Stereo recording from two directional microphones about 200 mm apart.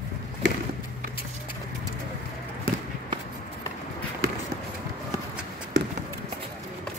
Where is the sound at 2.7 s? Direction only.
45° right (ahead or behind).